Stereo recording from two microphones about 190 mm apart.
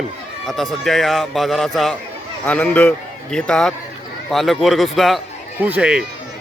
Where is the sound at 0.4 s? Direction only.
Centre (ahead or behind).